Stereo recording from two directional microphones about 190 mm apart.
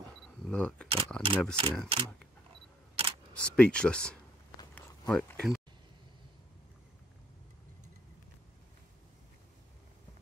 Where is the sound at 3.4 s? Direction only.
5° left (ahead or behind).